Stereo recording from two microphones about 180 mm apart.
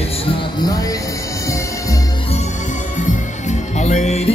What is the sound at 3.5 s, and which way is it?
Music, 40° left (ahead or behind).